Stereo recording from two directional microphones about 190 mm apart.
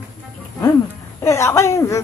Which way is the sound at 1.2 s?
15° left (ahead or behind).